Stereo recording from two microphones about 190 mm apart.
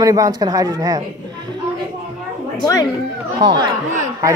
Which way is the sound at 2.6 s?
20° left (ahead or behind).